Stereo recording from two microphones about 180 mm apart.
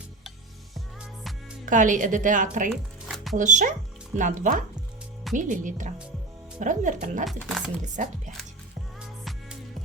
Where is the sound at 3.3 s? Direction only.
45° right (ahead or behind).